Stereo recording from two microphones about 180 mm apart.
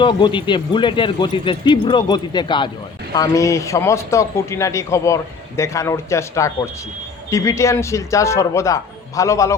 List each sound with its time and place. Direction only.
0.0 s a man's voice: 25° left (ahead or behind)